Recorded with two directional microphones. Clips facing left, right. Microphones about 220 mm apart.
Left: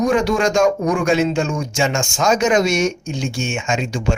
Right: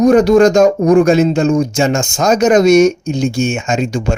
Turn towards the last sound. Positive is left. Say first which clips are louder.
# right 5 dB
turn(degrees=-40)  # may be behind; listen again after turning